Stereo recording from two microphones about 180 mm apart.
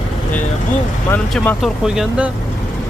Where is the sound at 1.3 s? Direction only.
Centre (ahead or behind).